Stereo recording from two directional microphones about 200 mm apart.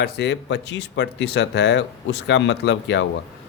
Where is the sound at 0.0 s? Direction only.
60° left (ahead or behind).